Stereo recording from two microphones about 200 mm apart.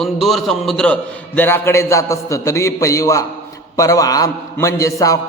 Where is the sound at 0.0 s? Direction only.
Centre (ahead or behind).